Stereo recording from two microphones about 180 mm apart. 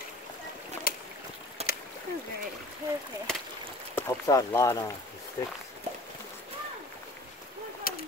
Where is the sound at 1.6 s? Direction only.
35° right (ahead or behind).